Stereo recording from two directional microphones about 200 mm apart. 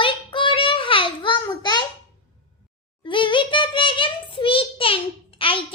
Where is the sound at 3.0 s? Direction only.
25° left (ahead or behind).